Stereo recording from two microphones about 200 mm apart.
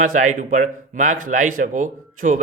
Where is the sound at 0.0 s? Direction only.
40° right (ahead or behind).